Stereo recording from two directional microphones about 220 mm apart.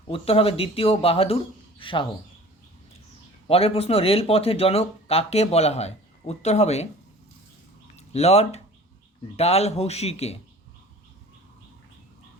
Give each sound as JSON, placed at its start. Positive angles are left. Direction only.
{"t": 0.1, "sound": "a man's voice", "side_deg": 25}
{"t": 3.4, "sound": "a man's voice", "side_deg": 25}
{"t": 7.9, "sound": "a man's voice", "side_deg": 30}